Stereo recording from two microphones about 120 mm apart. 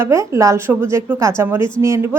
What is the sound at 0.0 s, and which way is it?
A woman's voice, 25° right (ahead or behind).